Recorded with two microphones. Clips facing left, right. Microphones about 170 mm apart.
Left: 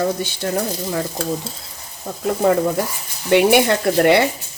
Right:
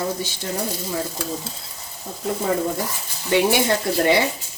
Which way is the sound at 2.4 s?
65° left (ahead or behind).